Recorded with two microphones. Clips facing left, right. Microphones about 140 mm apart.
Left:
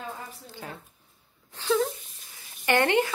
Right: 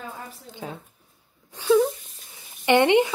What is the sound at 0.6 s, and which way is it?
Speech, 10° right (ahead or behind).